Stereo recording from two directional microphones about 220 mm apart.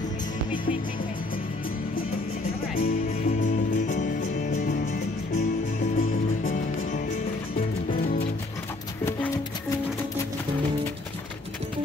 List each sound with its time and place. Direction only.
2.7 s music: 40° left (ahead or behind)
5.9 s music: 40° left (ahead or behind)